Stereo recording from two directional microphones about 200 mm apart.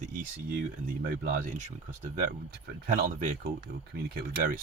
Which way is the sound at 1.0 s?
45° right (ahead or behind).